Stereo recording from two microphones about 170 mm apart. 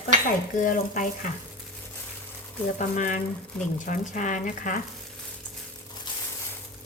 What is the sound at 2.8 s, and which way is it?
Speech, 50° left (ahead or behind).